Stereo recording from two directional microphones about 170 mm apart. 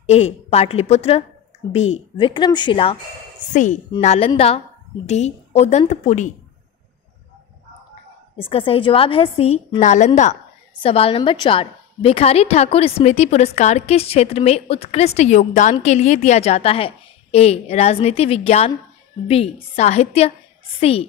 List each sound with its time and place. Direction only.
0.0 s a woman's voice: 40° left (ahead or behind)
4.0 s a woman's voice: 40° left (ahead or behind)
8.4 s a woman's voice: 30° left (ahead or behind)
10.8 s a woman's voice: 35° left (ahead or behind)